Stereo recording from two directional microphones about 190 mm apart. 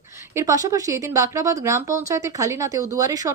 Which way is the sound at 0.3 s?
15° right (ahead or behind).